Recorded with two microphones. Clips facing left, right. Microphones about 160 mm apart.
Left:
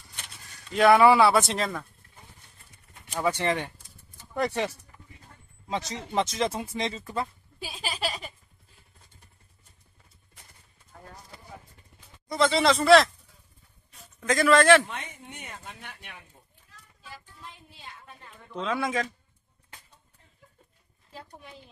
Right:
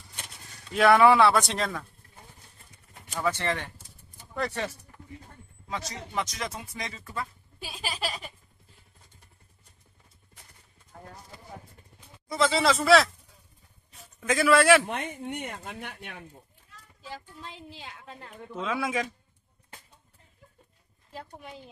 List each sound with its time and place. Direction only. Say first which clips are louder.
0.7 s speech: left 1 dB; centre (ahead or behind)
3.2 s speech: left 2 dB; 15° left (ahead or behind)
7.6 s a sound: left 1 dB; centre (ahead or behind)
12.3 s speech: left 2 dB; 5° right (ahead or behind)
14.2 s a man's voice: left 1 dB; 10° right (ahead or behind)
14.9 s speech: right 7 dB; 55° right (ahead or behind)
17.1 s speech: right 5 dB; 85° right; by 18.4 s 65° right (ahead or behind)
18.5 s speech: left 1 dB; 5° right (ahead or behind)